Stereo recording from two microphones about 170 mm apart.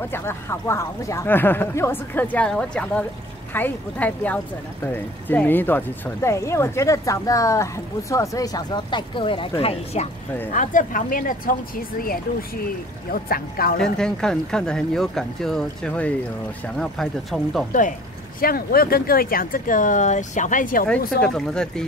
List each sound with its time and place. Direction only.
0.1 s speech: 15° left (ahead or behind); by 10.0 s 35° left (ahead or behind)
10.5 s speech: 50° left (ahead or behind)
13.9 s speech: 5° left (ahead or behind)
18.4 s speech: 60° left (ahead or behind)
21.2 s speech: 5° left (ahead or behind)